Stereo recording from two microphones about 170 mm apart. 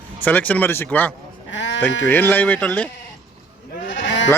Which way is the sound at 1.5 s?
90° left.